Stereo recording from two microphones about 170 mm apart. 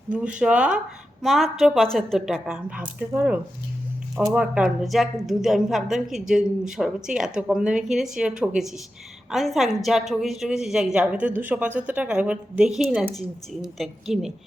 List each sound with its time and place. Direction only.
0.1 s speech: 5° right (ahead or behind)